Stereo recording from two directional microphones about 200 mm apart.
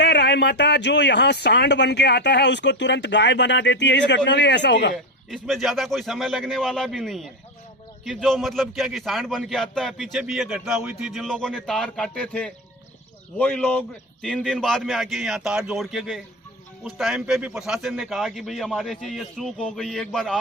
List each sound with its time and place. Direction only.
0.0 s speech: 60° left (ahead or behind)
5.3 s a man's voice: centre (ahead or behind)